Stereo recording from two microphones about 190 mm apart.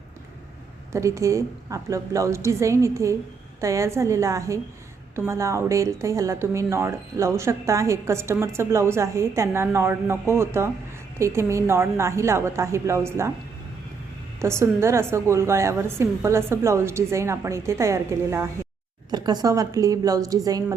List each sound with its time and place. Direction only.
0.9 s speech: 15° right (ahead or behind)
14.4 s a woman's voice: 15° right (ahead or behind)